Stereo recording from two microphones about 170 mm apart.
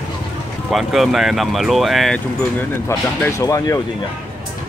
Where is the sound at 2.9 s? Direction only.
15° left (ahead or behind).